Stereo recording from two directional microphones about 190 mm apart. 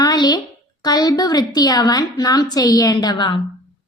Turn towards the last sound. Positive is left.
turn(degrees=25)  # may be behind; listen again after turning